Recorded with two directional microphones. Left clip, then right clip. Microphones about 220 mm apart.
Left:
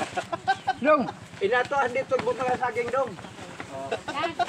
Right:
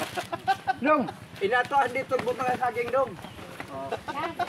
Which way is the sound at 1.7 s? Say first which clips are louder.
Even; 50° right (ahead or behind).